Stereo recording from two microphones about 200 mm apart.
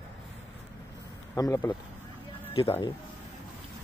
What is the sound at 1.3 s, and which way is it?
Speech, 15° left (ahead or behind).